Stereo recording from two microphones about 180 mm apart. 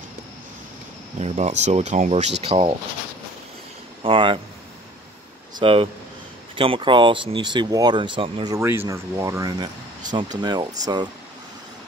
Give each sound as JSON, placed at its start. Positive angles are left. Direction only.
{"t": 1.2, "sound": "speech", "side_deg": -40}
{"t": 4.0, "sound": "speech", "side_deg": -30}
{"t": 5.6, "sound": "speech", "side_deg": -30}
{"t": 8.5, "sound": "speech", "side_deg": -15}